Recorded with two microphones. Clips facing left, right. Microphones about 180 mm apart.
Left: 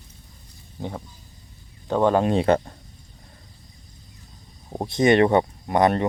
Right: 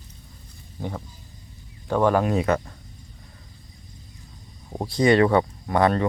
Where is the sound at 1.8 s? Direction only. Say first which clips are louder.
Left 1 dB; 20° left (ahead or behind).